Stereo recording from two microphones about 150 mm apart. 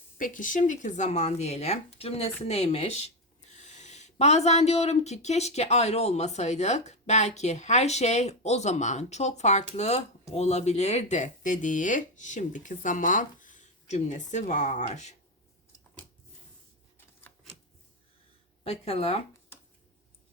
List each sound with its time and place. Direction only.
0.2 s speech: 60° left (ahead or behind)
18.6 s speech: 40° left (ahead or behind)